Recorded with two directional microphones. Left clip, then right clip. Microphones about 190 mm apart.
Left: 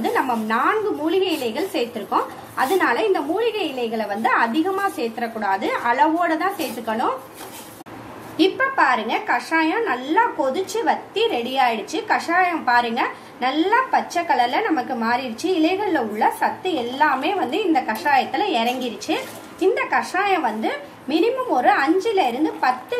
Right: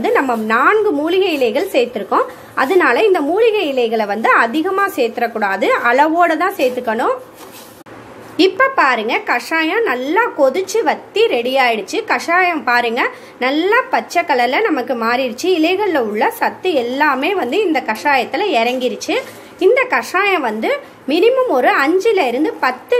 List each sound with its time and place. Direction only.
0.0 s a woman's voice: 45° right (ahead or behind)
8.4 s a woman's voice: 50° right (ahead or behind)